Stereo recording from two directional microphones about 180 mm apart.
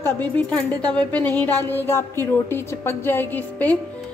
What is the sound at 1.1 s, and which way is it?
A woman's voice, 10° left (ahead or behind).